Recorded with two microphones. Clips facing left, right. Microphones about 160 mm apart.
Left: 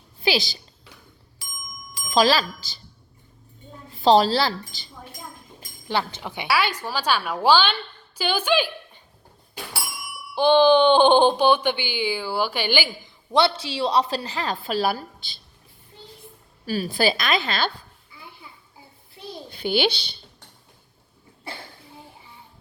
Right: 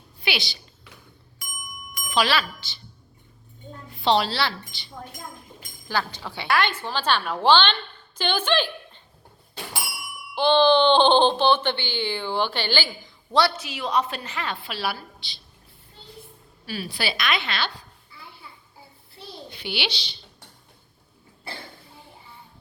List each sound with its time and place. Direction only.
0.2 s a sound: 40° left (ahead or behind)
1.9 s speech: 35° left (ahead or behind)
4.0 s a woman's voice: 40° left (ahead or behind)
5.9 s speech: 20° left (ahead or behind)
6.5 s a woman's voice: 5° left (ahead or behind)
10.3 s speech: 15° left (ahead or behind)
13.3 s a woman's voice: 25° left (ahead or behind); by 15.0 s 40° left (ahead or behind)
16.6 s a woman's voice: 40° left (ahead or behind)
19.5 s a child's voice: 45° left (ahead or behind)